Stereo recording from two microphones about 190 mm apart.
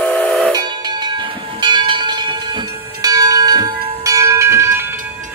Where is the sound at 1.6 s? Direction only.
25° right (ahead or behind).